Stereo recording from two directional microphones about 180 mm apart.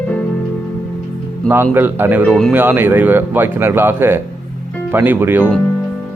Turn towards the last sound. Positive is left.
turn(degrees=-10)  # may be behind; listen again after turning